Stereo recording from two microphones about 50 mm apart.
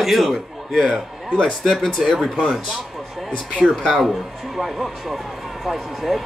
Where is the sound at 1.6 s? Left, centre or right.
Centre.